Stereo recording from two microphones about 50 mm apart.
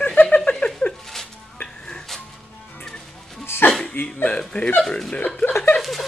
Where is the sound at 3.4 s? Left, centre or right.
Left.